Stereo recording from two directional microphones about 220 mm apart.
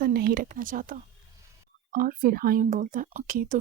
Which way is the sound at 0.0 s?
45° right (ahead or behind).